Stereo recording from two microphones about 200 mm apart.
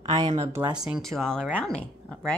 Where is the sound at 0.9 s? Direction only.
Centre (ahead or behind).